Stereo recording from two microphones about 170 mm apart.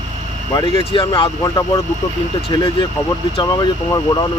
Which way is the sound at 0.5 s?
25° left (ahead or behind).